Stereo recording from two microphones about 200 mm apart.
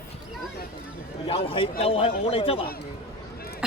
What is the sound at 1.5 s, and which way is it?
Speech, 30° left (ahead or behind).